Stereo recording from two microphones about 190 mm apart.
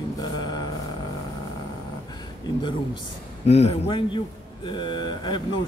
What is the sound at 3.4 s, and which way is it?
Speech, 35° left (ahead or behind).